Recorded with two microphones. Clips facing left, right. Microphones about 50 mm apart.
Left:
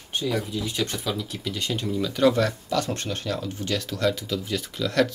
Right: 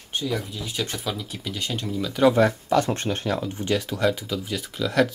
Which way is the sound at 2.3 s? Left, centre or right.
Right.